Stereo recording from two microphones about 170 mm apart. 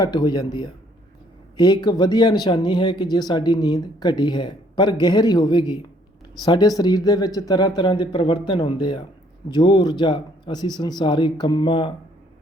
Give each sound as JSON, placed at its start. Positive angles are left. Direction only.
{"t": 0.0, "sound": "speech", "side_deg": 25}